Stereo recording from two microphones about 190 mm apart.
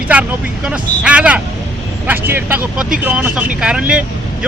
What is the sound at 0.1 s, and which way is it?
Speech, 5° right (ahead or behind).